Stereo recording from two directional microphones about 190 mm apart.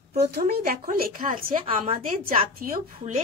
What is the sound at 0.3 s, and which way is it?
Speech, 50° right (ahead or behind).